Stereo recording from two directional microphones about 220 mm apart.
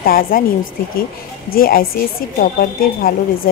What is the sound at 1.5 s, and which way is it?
A woman's voice, 40° left (ahead or behind).